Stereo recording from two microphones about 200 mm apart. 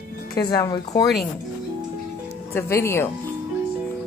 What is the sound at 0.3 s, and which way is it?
Speech, 20° left (ahead or behind).